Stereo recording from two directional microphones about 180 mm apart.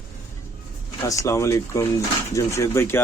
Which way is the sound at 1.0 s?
15° left (ahead or behind).